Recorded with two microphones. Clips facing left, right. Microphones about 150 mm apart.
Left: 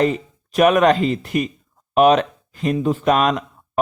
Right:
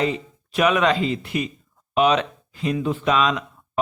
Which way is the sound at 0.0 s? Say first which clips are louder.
Left 5 dB; 45° left (ahead or behind).